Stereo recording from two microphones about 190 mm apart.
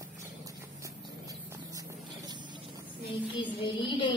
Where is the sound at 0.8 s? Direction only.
15° right (ahead or behind).